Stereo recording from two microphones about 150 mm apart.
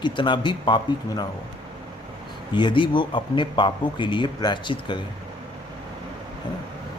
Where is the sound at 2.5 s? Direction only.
30° left (ahead or behind).